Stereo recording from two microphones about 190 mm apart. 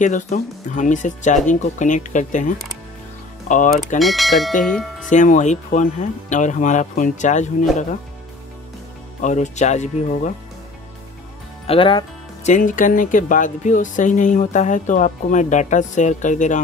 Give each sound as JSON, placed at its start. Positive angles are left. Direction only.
{"t": 0.0, "sound": "speech", "side_deg": 40}
{"t": 4.0, "sound": "speech", "side_deg": 0}
{"t": 5.1, "sound": "speech", "side_deg": 40}
{"t": 9.2, "sound": "speech", "side_deg": 40}
{"t": 11.6, "sound": "speech", "side_deg": 30}
{"t": 12.4, "sound": "speech", "side_deg": 40}